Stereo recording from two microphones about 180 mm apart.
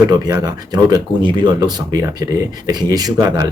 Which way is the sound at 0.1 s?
20° right (ahead or behind).